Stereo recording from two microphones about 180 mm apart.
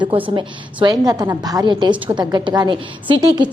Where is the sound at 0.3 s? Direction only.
25° right (ahead or behind).